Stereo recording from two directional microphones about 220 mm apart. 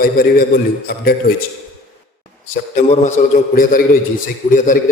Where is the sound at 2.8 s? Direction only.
35° left (ahead or behind).